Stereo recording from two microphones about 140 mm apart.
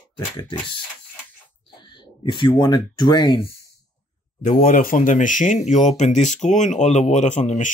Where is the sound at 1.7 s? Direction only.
35° left (ahead or behind).